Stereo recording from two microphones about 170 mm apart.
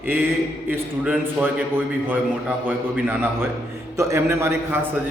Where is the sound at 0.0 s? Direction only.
10° right (ahead or behind).